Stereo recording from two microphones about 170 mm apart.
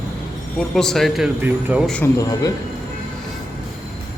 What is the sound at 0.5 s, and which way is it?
Speech, centre (ahead or behind).